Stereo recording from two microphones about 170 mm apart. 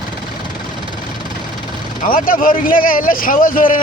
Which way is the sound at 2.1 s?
55° left (ahead or behind).